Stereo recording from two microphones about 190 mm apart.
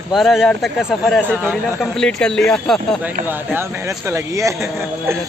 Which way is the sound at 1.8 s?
5° left (ahead or behind).